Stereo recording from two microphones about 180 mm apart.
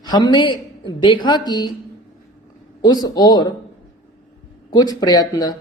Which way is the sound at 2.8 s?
20° left (ahead or behind).